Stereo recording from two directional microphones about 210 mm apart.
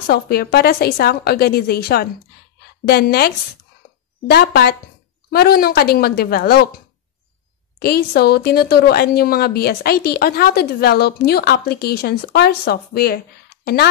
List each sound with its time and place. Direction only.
0.0 s speech: 50° left (ahead or behind)
7.8 s speech: 50° left (ahead or behind)